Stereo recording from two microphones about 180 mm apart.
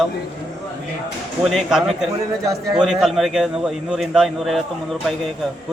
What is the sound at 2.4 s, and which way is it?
Speech, 20° right (ahead or behind).